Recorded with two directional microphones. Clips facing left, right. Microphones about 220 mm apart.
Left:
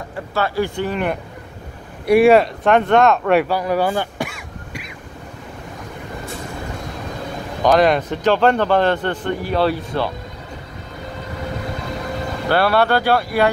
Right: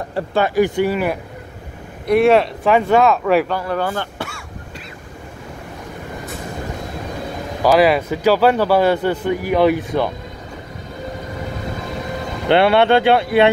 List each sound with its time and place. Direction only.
0.3 s a man's voice: 15° right (ahead or behind)
2.0 s speech: 5° left (ahead or behind)
3.5 s throat clearing: 10° left (ahead or behind)
7.6 s a man's voice: 5° right (ahead or behind)
12.4 s speech: 20° right (ahead or behind)